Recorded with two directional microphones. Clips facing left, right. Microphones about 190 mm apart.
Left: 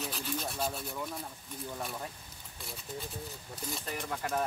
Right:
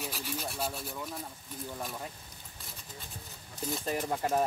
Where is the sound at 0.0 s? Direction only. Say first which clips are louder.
Left 1 dB; 10° right (ahead or behind).